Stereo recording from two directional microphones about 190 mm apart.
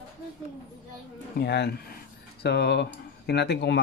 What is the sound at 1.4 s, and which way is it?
Speech, 60° left (ahead or behind).